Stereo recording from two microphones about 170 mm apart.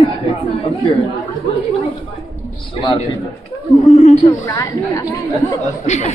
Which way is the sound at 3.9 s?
45° left (ahead or behind).